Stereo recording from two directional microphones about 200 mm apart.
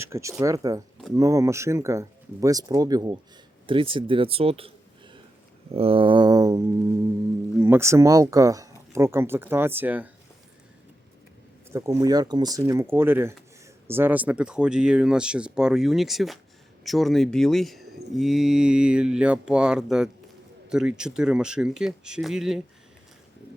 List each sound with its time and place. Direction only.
0.0 s speech: 15° right (ahead or behind)
5.7 s a sound: 30° right (ahead or behind)
7.6 s speech: 10° right (ahead or behind)
11.7 s speech: 15° right (ahead or behind)